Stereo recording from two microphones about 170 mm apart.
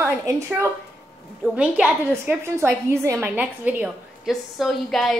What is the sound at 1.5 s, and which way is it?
A woman's voice, 5° right (ahead or behind).